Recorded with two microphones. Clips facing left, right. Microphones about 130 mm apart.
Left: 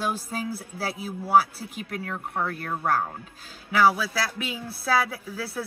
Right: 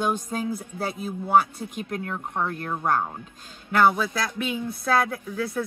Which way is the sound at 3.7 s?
5° left (ahead or behind).